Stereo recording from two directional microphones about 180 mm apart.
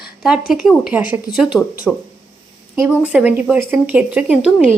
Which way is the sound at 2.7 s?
10° right (ahead or behind).